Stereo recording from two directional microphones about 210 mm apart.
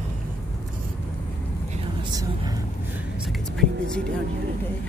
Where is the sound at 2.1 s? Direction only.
15° right (ahead or behind).